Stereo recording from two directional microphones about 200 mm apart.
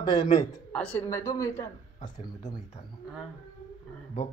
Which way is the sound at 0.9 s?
15° left (ahead or behind).